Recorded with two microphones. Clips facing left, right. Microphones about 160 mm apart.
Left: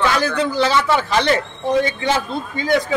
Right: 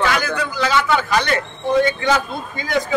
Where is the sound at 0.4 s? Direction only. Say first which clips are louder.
Left 3 dB; 30° left (ahead or behind).